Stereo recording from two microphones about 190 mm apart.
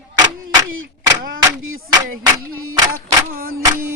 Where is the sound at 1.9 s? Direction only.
20° right (ahead or behind).